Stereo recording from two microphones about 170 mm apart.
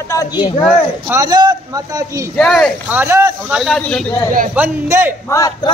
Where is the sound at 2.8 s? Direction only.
15° right (ahead or behind).